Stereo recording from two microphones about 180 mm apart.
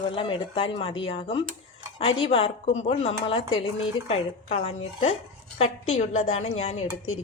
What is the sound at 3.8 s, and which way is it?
Speech, 35° left (ahead or behind).